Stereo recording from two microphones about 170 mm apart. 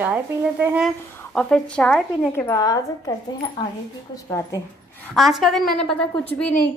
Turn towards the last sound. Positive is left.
turn(degrees=10)  # may be behind; listen again after turning